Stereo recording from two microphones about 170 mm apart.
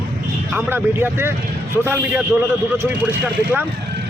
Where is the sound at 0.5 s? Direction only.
15° right (ahead or behind).